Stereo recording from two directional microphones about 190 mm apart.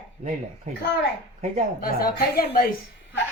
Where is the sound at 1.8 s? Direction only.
50° left (ahead or behind).